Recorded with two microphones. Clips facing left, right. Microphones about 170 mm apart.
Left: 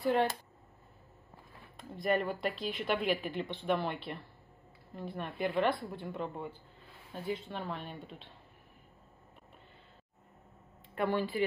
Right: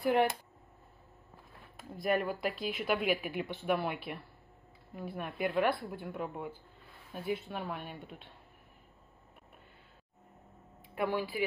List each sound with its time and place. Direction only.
0.0 s speech: 15° right (ahead or behind)
1.8 s speech: centre (ahead or behind)
11.0 s speech: 10° right (ahead or behind)